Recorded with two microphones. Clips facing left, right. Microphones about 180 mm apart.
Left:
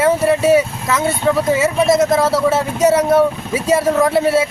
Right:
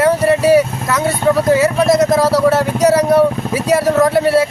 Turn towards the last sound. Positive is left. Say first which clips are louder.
# right 2 dB
turn(degrees=0)  # may be behind; listen again after turning